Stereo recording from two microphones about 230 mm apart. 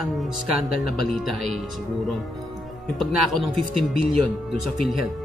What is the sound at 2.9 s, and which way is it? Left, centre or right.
Speech, centre.